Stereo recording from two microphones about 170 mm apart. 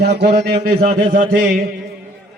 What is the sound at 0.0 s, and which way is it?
Speech, 75° right (ahead or behind).